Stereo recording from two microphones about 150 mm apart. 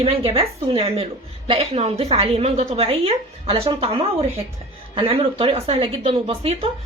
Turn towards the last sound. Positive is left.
turn(degrees=-45)  # may be behind; listen again after turning